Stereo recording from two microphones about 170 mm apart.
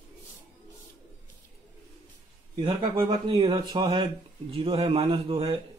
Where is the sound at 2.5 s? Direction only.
25° right (ahead or behind).